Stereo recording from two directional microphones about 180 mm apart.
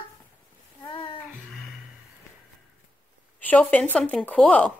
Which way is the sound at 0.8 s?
30° left (ahead or behind).